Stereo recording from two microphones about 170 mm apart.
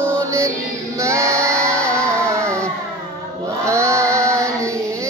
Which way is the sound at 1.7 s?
5° left (ahead or behind).